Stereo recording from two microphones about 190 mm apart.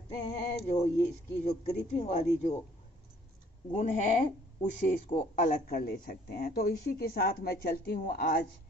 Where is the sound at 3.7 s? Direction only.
40° left (ahead or behind).